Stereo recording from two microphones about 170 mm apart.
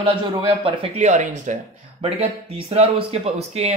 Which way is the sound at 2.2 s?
35° right (ahead or behind).